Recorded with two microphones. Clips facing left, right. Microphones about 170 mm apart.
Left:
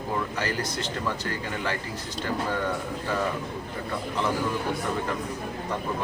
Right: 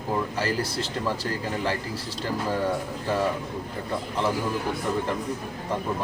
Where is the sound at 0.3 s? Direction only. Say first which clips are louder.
Right 2 dB; 30° right (ahead or behind).